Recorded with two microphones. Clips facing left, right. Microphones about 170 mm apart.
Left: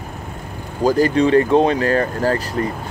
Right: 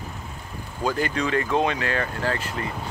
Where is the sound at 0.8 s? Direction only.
35° left (ahead or behind).